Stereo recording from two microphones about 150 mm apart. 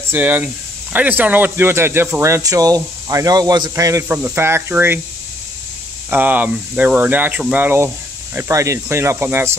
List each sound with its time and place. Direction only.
0.1 s speech: 10° right (ahead or behind)
6.0 s speech: 10° right (ahead or behind)